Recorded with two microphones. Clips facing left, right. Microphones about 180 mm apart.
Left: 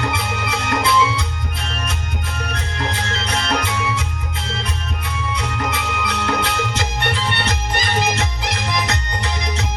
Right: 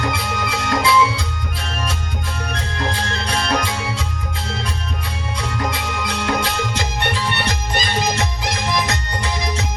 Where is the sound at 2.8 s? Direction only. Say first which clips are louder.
Right 1 dB; 55° right (ahead or behind).